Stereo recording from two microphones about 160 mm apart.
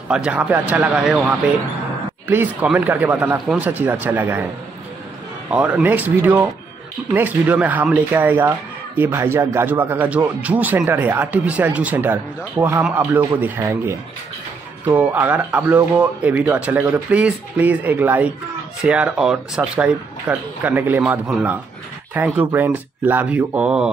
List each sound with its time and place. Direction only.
0.1 s speech: 5° right (ahead or behind)
5.5 s speech: 10° right (ahead or behind)